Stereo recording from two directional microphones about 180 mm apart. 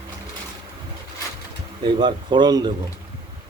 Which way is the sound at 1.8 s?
25° right (ahead or behind).